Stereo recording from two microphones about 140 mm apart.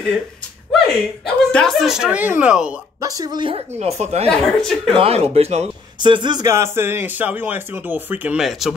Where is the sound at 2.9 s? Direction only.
25° right (ahead or behind).